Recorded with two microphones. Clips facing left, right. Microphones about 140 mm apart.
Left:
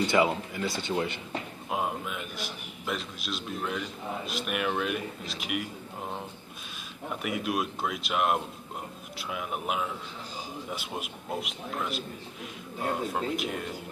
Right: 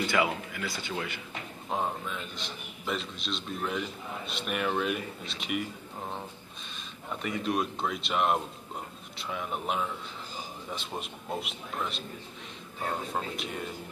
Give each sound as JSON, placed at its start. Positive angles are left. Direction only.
{"t": 0.0, "sound": "speech", "side_deg": 25}
{"t": 1.7, "sound": "a man's voice", "side_deg": 10}